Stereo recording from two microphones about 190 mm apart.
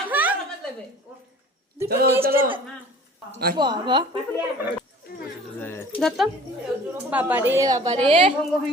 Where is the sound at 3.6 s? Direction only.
25° right (ahead or behind).